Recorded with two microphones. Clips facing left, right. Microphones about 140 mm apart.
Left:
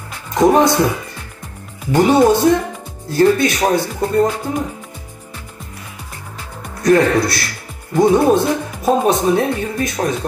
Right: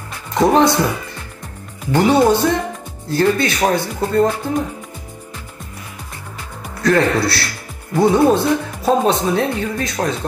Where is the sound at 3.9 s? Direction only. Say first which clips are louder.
Even; 5° left (ahead or behind).